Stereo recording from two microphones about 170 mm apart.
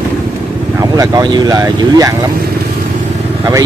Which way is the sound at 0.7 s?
20° right (ahead or behind).